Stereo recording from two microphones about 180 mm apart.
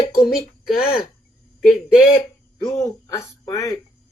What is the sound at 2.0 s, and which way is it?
Speech, 30° left (ahead or behind).